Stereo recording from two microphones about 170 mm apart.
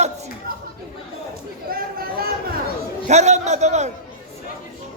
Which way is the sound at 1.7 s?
60° right (ahead or behind).